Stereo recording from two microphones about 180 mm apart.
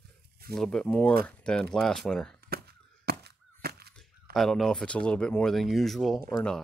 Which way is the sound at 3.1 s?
60° right (ahead or behind).